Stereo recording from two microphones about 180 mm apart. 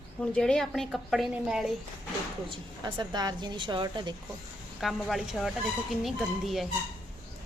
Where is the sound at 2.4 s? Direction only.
30° right (ahead or behind).